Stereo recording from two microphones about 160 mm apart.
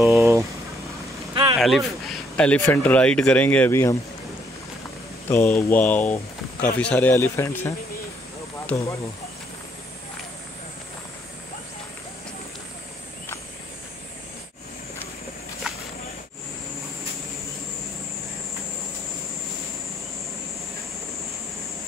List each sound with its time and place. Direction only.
0.0 s speech: 15° right (ahead or behind)
1.3 s vehicle: 30° right (ahead or behind)
1.6 s speech: centre (ahead or behind)
5.3 s speech: 10° left (ahead or behind)